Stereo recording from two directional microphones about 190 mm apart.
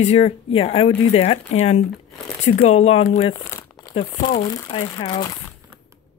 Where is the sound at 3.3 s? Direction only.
15° left (ahead or behind).